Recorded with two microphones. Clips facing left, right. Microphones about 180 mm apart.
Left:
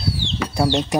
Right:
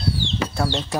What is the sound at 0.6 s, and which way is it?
Speech, 20° left (ahead or behind).